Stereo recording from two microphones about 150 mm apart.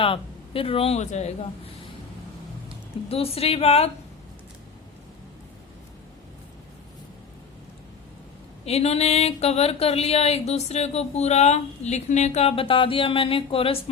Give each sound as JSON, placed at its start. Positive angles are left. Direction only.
{"t": 0.0, "sound": "speech", "side_deg": 40}
{"t": 3.1, "sound": "speech", "side_deg": 40}
{"t": 8.6, "sound": "speech", "side_deg": 45}